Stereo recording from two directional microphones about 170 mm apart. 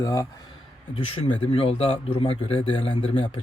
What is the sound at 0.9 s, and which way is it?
Speech, 35° left (ahead or behind).